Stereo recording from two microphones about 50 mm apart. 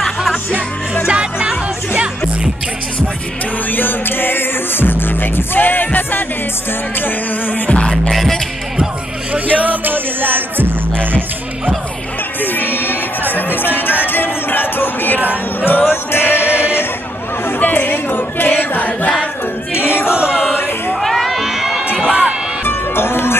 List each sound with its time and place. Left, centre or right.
1.0 s music: centre
3.7 s music: left
8.1 s music: centre
9.3 s music: right
12.4 s music: left
20.1 s chant: right
21.0 s crowd: centre
22.0 s music: right
22.7 s livestock: left